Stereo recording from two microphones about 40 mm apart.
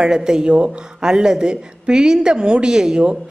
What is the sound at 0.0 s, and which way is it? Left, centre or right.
Speech, centre.